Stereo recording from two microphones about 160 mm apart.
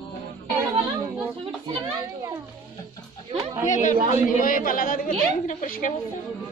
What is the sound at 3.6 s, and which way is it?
A woman's voice, 50° left (ahead or behind).